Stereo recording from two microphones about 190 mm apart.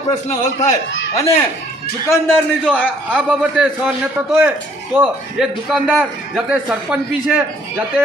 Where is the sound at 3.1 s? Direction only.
5° right (ahead or behind).